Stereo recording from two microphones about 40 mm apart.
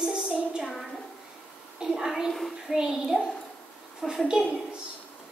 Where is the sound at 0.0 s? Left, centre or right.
Right.